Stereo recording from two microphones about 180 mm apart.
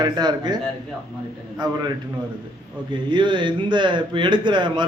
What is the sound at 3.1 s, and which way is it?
A man's voice, 25° right (ahead or behind).